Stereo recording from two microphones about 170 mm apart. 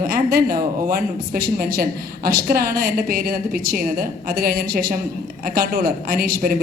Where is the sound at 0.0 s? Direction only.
60° right (ahead or behind).